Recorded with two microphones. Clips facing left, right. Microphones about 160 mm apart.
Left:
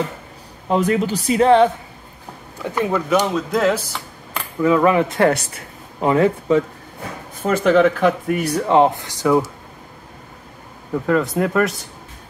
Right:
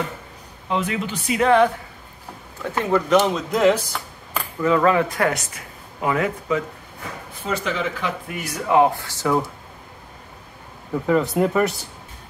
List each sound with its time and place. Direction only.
0.7 s speech: 40° left (ahead or behind)
2.8 s speech: 10° left (ahead or behind)
4.6 s speech: 15° left (ahead or behind); by 6.6 s 30° left (ahead or behind)
7.4 s speech: 55° left (ahead or behind)
8.4 s speech: 25° left (ahead or behind)
11.1 s speech: 5° right (ahead or behind)